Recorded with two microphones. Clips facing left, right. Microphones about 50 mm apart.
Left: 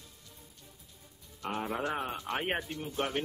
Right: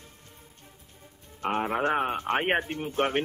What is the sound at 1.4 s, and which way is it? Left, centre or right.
A woman's voice, right.